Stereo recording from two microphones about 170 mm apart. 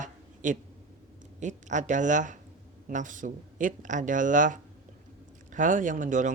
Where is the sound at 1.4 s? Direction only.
45° right (ahead or behind).